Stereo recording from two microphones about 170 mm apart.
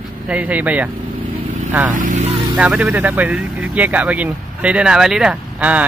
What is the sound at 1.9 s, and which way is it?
Speech, 50° right (ahead or behind).